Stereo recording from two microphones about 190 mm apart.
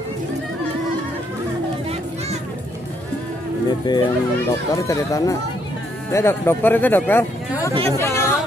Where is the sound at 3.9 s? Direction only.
25° left (ahead or behind).